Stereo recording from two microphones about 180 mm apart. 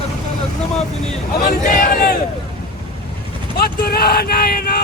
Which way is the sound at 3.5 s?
60° left (ahead or behind).